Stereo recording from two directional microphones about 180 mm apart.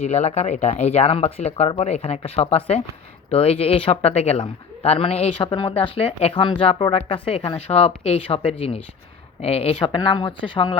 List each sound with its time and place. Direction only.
0.0 s speech: 40° left (ahead or behind)